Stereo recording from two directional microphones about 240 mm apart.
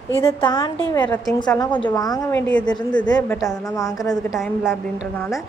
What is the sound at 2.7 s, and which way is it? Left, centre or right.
Speech, centre.